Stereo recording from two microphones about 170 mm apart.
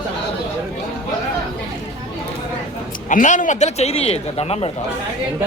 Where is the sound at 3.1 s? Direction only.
50° left (ahead or behind).